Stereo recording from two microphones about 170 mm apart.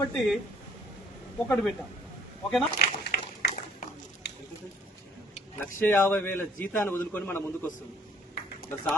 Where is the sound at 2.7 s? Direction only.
70° left (ahead or behind).